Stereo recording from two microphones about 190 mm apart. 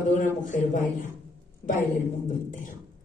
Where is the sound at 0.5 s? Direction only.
40° left (ahead or behind).